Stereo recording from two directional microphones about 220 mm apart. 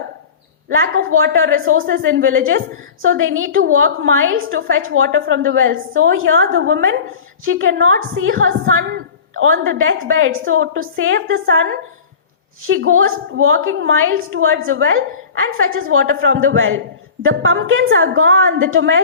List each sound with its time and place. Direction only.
0.7 s a woman's voice: 65° right (ahead or behind)